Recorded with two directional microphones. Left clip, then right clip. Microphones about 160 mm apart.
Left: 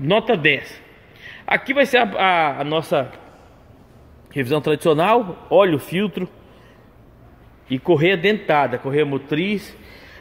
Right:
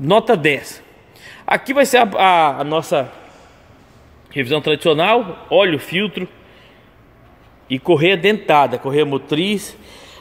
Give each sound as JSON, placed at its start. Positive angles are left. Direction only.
{"t": 0.0, "sound": "a man's voice", "side_deg": -25}
{"t": 4.3, "sound": "a man's voice", "side_deg": 0}
{"t": 7.6, "sound": "a man's voice", "side_deg": -10}